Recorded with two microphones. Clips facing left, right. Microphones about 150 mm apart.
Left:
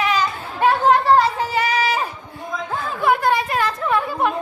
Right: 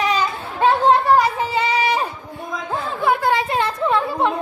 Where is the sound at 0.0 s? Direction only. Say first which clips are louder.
Even; 30° right (ahead or behind).